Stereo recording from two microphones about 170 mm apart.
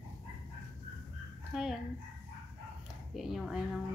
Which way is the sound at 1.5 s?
Centre (ahead or behind).